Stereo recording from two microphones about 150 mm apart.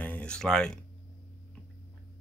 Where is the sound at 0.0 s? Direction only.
10° left (ahead or behind).